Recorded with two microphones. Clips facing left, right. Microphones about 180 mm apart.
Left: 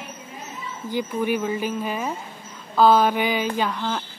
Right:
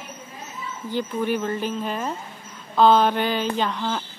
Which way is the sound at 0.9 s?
10° left (ahead or behind).